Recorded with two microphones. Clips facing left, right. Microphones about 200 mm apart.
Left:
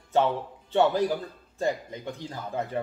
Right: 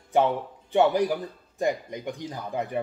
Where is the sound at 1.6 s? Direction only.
15° right (ahead or behind).